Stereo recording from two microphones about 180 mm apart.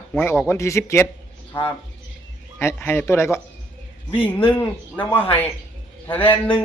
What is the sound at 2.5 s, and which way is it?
Speech, 10° left (ahead or behind).